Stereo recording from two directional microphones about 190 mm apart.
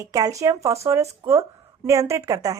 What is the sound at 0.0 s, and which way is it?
A woman's voice, 20° right (ahead or behind).